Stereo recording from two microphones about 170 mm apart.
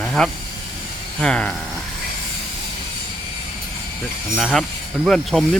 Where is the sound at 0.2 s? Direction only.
5° left (ahead or behind).